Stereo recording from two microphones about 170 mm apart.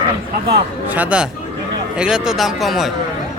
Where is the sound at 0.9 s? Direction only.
10° right (ahead or behind).